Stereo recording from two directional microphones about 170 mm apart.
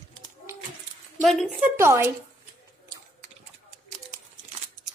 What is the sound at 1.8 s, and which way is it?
Speech, 15° right (ahead or behind).